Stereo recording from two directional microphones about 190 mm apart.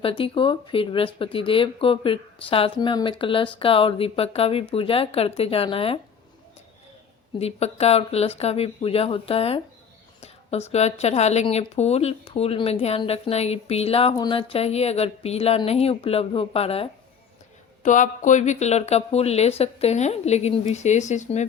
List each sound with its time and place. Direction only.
0.0 s speech: 30° left (ahead or behind)
7.3 s speech: 35° left (ahead or behind)
17.8 s speech: 40° left (ahead or behind)